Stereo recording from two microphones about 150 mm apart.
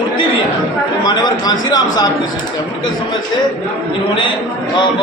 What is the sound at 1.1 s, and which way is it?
A man's voice, 30° left (ahead or behind).